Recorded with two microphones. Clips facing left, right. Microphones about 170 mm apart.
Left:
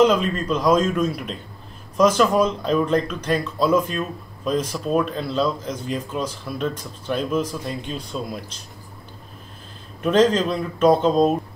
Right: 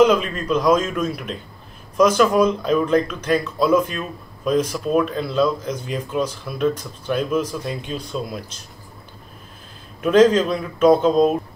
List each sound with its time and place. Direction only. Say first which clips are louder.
0.0 s speech: right 2 dB; 5° right (ahead or behind)
10.0 s speech: right 3 dB; 5° right (ahead or behind)